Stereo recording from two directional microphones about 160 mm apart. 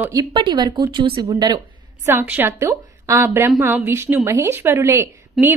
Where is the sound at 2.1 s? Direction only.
15° right (ahead or behind).